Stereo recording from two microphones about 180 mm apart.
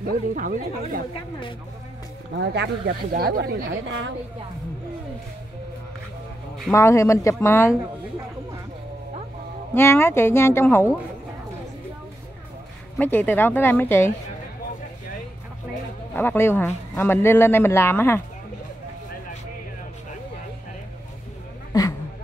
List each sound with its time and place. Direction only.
0.0 s speech: 50° right (ahead or behind)
2.3 s speech: 75° right (ahead or behind)
3.1 s speech: 55° right (ahead or behind)
3.8 s a woman's voice: 90° right
6.7 s speech: 15° left (ahead or behind)
9.8 s speech: 15° left (ahead or behind)
12.9 s speech: 10° left (ahead or behind)
16.2 s speech: 10° left (ahead or behind)
21.7 s a sound: 20° left (ahead or behind)